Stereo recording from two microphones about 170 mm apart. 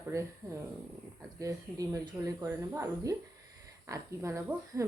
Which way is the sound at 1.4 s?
20° right (ahead or behind).